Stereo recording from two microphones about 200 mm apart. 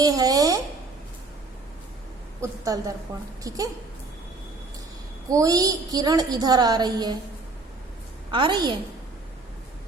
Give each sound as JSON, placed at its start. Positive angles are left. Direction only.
{"t": 0.0, "sound": "a sound", "side_deg": -20}
{"t": 2.4, "sound": "a woman's voice", "side_deg": -15}
{"t": 5.3, "sound": "a woman's voice", "side_deg": -15}
{"t": 8.3, "sound": "a woman's voice", "side_deg": -25}